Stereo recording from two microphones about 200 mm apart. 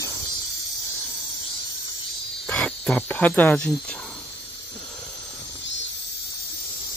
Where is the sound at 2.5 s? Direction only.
5° left (ahead or behind).